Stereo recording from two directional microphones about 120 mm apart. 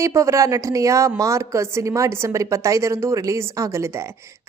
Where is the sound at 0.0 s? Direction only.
25° right (ahead or behind).